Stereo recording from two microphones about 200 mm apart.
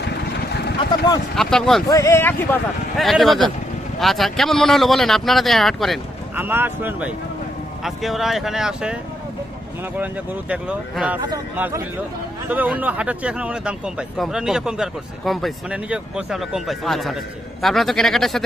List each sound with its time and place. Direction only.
0.5 s vehicle: 55° left (ahead or behind)
1.4 s speech: centre (ahead or behind)
1.9 s speech: 15° left (ahead or behind)
3.0 s speech: centre (ahead or behind)
6.4 s speech: 10° right (ahead or behind)
10.5 s speech: 5° right (ahead or behind)